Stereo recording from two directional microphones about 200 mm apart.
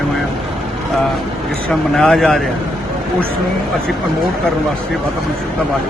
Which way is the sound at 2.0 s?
Centre (ahead or behind).